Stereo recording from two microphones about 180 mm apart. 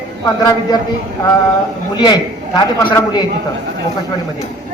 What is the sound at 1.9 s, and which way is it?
Speech, 25° left (ahead or behind).